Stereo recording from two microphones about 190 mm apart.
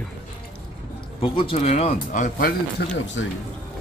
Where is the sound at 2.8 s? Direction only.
65° left (ahead or behind).